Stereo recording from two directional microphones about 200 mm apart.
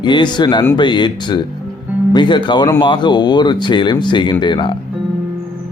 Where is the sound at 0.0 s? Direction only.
20° left (ahead or behind).